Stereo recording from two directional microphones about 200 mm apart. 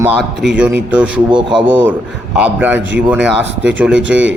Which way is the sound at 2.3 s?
10° right (ahead or behind).